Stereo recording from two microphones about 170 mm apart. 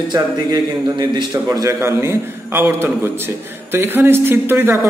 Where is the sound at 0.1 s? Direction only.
25° right (ahead or behind).